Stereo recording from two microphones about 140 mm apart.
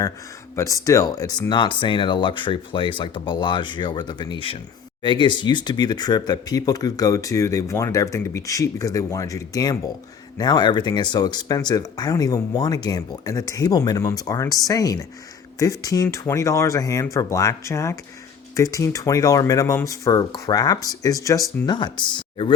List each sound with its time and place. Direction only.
0.5 s speech: 20° left (ahead or behind)